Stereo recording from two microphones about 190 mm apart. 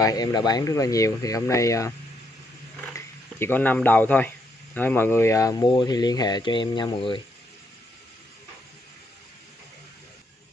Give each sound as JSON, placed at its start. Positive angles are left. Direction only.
{"t": 0.0, "sound": "speech", "side_deg": 20}